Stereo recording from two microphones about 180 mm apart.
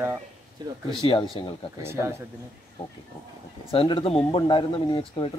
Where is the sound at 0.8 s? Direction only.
25° left (ahead or behind).